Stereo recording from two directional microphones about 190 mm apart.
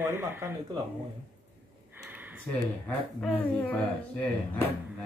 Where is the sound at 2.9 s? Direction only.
10° left (ahead or behind).